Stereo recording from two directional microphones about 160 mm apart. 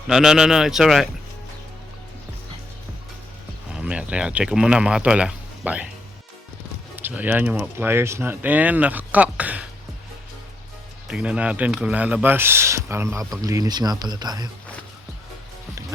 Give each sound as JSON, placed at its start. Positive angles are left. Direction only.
{"t": 0.1, "sound": "speech", "side_deg": -5}
{"t": 3.8, "sound": "speech", "side_deg": -5}
{"t": 6.9, "sound": "speech", "side_deg": -10}
{"t": 11.1, "sound": "speech", "side_deg": -5}